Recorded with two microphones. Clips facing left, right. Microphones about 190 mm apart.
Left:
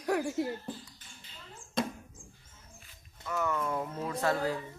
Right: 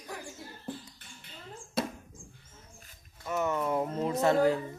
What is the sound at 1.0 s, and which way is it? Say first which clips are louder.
Rodents: right 3 dB; 60° right (ahead or behind).